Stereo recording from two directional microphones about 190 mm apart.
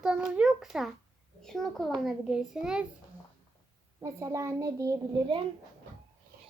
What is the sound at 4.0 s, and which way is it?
A child's voice, 15° right (ahead or behind).